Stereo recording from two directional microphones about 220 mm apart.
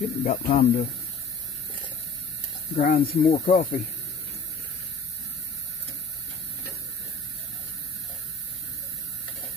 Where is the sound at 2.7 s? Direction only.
40° left (ahead or behind).